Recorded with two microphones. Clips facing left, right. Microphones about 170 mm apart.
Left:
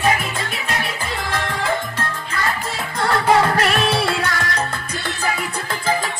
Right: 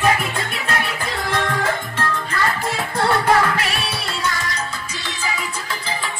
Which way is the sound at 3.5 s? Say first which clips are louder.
Left 6 dB; 45° left (ahead or behind).